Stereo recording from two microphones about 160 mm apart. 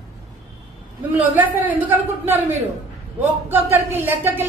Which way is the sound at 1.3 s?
10° right (ahead or behind).